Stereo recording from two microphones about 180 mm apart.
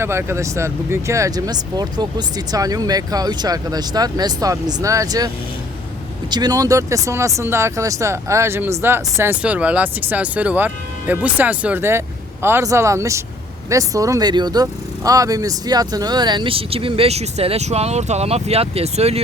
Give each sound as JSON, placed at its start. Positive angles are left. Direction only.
{"t": 0.0, "sound": "speech", "side_deg": -15}
{"t": 6.3, "sound": "speech", "side_deg": -20}